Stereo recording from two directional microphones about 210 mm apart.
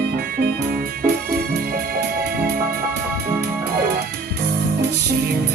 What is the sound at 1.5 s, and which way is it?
Music, 50° right (ahead or behind).